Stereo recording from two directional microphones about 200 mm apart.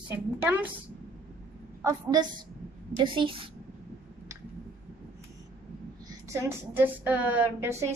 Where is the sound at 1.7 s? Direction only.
15° right (ahead or behind).